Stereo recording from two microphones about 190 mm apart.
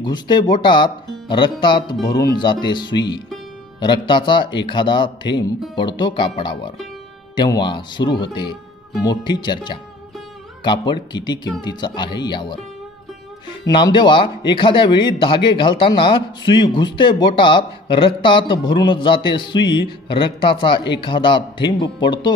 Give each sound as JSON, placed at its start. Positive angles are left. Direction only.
{"t": 0.0, "sound": "a man's voice", "side_deg": 25}
{"t": 13.7, "sound": "a man's voice", "side_deg": 25}